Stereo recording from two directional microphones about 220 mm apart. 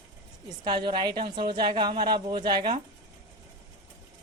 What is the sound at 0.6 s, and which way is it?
A woman's voice, 20° right (ahead or behind).